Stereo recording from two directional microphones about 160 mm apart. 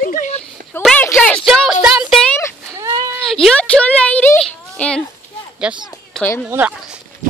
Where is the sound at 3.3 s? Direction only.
5° left (ahead or behind).